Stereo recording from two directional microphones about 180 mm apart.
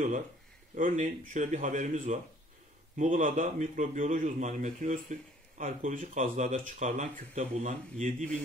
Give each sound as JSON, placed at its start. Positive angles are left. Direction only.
{"t": 0.7, "sound": "a man's voice", "side_deg": -45}